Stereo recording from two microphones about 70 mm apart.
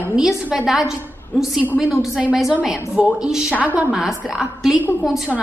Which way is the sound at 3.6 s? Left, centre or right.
Right.